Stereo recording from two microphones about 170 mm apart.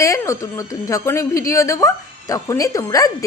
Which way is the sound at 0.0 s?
15° left (ahead or behind).